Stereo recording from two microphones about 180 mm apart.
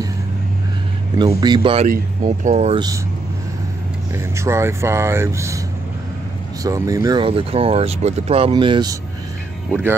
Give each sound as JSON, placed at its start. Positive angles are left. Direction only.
{"t": 1.4, "sound": "speech", "side_deg": -25}
{"t": 1.9, "sound": "speech", "side_deg": -45}
{"t": 4.1, "sound": "speech", "side_deg": -15}
{"t": 6.6, "sound": "speech", "side_deg": -20}
{"t": 9.7, "sound": "speech", "side_deg": -10}